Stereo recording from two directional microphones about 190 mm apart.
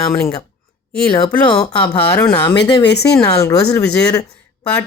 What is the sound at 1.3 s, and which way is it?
Speech, 5° left (ahead or behind).